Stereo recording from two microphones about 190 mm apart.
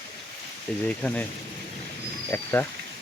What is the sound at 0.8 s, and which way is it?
Speech, 5° left (ahead or behind).